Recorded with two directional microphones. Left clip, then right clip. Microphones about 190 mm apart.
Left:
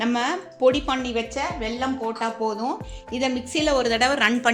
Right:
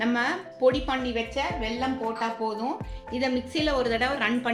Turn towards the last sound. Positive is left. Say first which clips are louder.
# left 6 dB
turn(degrees=50)  # may be behind; listen again after turning